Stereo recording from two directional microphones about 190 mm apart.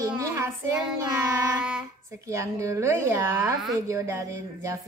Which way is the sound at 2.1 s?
15° right (ahead or behind).